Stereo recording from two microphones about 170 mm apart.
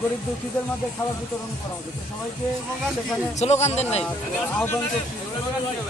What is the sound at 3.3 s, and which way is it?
Speech, 40° left (ahead or behind).